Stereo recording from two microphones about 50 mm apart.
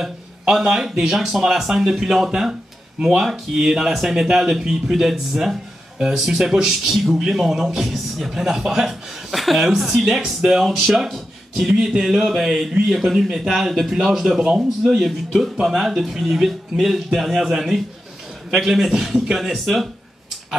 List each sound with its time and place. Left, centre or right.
0.0 s speech: centre
14.4 s a man's voice: centre
15.0 s speech: centre